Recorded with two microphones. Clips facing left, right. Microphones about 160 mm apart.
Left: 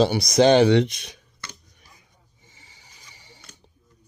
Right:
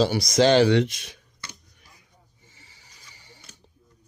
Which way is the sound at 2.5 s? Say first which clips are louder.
Left 3 dB; 20° left (ahead or behind).